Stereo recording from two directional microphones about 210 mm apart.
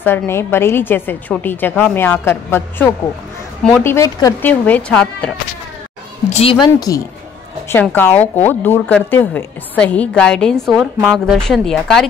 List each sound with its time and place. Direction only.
0.0 s a woman's voice: 10° left (ahead or behind)
6.6 s a woman's voice: 15° left (ahead or behind); by 12.1 s centre (ahead or behind)